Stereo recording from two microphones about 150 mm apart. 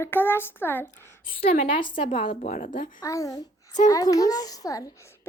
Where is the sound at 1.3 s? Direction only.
35° left (ahead or behind).